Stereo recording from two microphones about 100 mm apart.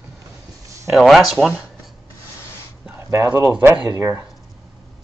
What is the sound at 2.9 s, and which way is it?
Speech, 30° right (ahead or behind).